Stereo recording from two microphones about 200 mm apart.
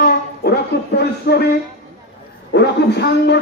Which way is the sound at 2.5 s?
55° left (ahead or behind).